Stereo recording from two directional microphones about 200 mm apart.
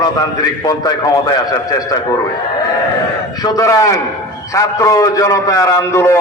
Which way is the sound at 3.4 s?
15° left (ahead or behind).